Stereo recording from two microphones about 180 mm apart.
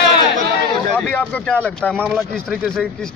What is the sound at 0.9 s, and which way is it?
Speech, 10° left (ahead or behind).